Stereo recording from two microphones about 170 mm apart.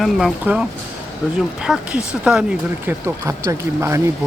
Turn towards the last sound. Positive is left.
turn(degrees=-15)  # may be behind; listen again after turning